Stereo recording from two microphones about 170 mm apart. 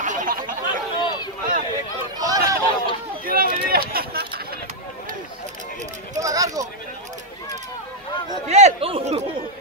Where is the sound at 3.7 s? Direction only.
60° right (ahead or behind).